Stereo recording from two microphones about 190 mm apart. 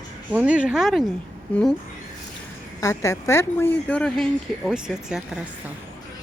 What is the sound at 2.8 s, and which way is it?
A woman's voice, 15° left (ahead or behind).